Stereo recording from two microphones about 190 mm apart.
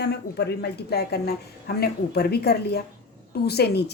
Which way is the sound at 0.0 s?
60° left (ahead or behind).